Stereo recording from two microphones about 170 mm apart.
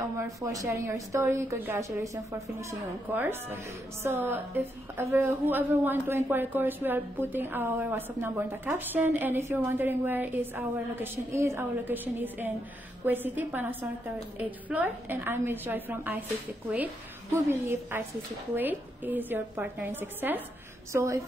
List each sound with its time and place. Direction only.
0.2 s a woman's voice: 20° right (ahead or behind)
3.2 s a woman's voice: 15° right (ahead or behind)